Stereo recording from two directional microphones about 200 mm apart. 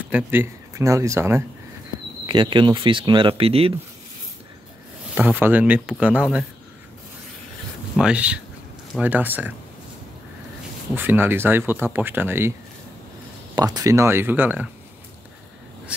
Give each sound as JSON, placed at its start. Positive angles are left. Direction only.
{"t": 0.1, "sound": "speech", "side_deg": -10}
{"t": 2.2, "sound": "speech", "side_deg": -25}
{"t": 5.1, "sound": "speech", "side_deg": -5}
{"t": 7.9, "sound": "speech", "side_deg": -5}
{"t": 11.0, "sound": "speech", "side_deg": -10}
{"t": 13.6, "sound": "speech", "side_deg": -20}